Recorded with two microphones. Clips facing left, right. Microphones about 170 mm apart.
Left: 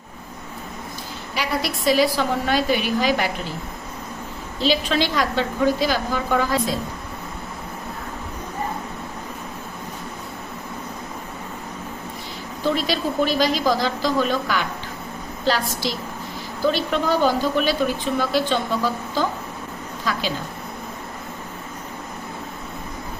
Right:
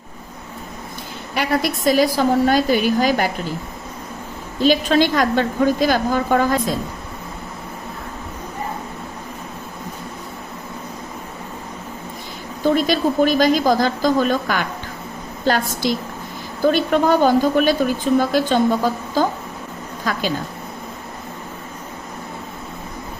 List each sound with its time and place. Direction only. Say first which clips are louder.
1.4 s a woman's voice: right 5 dB; 50° right (ahead or behind)
4.6 s a woman's voice: right 5 dB; 50° right (ahead or behind)
12.6 s a woman's voice: right 5 dB; 50° right (ahead or behind)
20.1 s a sound: right 2 dB; 50° right (ahead or behind)